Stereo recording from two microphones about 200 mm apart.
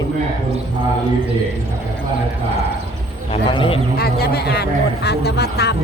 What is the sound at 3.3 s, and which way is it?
Speech, 30° left (ahead or behind).